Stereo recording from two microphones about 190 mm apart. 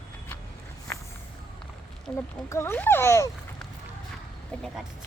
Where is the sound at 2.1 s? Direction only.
15° left (ahead or behind).